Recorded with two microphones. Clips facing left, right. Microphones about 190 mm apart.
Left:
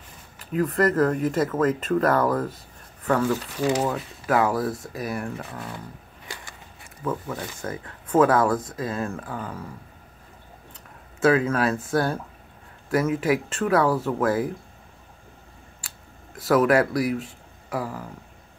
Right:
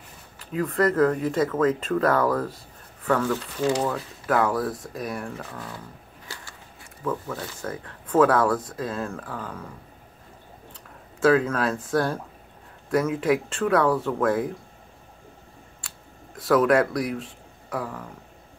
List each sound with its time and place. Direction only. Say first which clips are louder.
0.5 s speech: left 1 dB; 5° left (ahead or behind)
5.5 s speech: left 2 dB; 15° left (ahead or behind)
6.2 s a sound: left 2 dB; 15° left (ahead or behind)
7.1 s speech: even; 15° left (ahead or behind)
11.1 s speech: even; 5° left (ahead or behind)
16.3 s speech: even; 5° left (ahead or behind)